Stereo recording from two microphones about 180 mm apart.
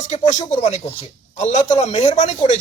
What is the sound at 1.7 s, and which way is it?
Speech, 35° left (ahead or behind).